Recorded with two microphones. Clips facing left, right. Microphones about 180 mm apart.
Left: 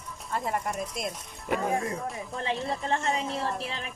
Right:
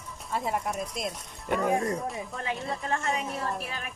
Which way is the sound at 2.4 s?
30° left (ahead or behind).